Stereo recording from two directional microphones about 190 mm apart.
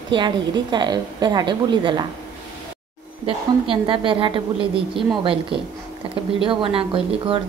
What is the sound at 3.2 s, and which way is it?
A woman's voice, 25° right (ahead or behind).